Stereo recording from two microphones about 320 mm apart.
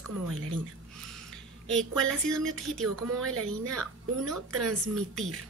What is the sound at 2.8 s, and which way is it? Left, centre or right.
A woman's voice, right.